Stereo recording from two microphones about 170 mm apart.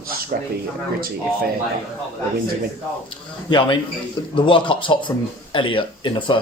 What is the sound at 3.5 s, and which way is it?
Speech, 30° left (ahead or behind).